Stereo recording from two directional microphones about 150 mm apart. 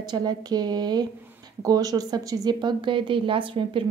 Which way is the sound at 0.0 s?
30° right (ahead or behind).